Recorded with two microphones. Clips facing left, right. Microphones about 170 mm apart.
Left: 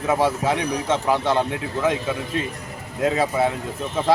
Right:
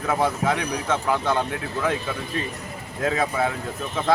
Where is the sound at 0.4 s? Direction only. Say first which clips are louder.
Left 2 dB; 25° left (ahead or behind).